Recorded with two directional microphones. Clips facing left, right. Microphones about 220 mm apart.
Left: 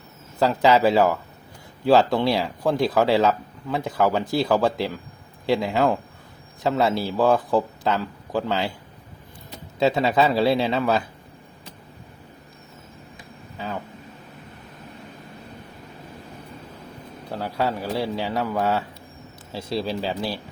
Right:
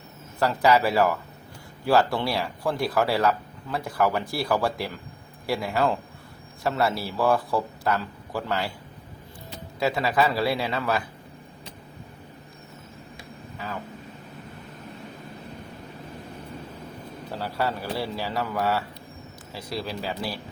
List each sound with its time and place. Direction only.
0.3 s a man's voice: 20° left (ahead or behind)
9.8 s speech: 25° left (ahead or behind)
17.4 s speech: 15° left (ahead or behind)